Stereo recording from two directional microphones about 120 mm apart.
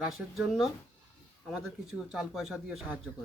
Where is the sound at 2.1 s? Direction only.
Centre (ahead or behind).